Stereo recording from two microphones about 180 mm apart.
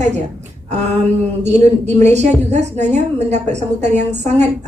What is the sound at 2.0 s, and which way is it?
Speech, 40° right (ahead or behind).